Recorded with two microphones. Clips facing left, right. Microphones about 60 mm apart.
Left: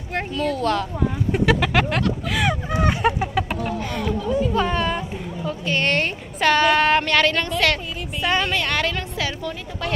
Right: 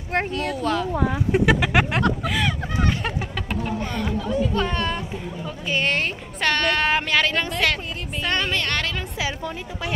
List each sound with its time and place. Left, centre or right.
0.5 s a woman's voice: centre
2.4 s fowl: centre
3.8 s a sound: centre
5.7 s a woman's voice: centre
8.2 s a woman's voice: centre
9.2 s a woman's voice: centre